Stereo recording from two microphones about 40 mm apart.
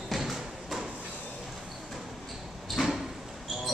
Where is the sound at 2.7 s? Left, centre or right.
Centre.